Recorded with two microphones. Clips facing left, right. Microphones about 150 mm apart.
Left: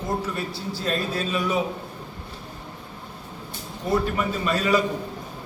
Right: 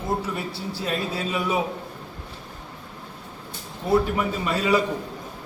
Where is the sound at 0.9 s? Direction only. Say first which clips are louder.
Left 1 dB; 15° right (ahead or behind).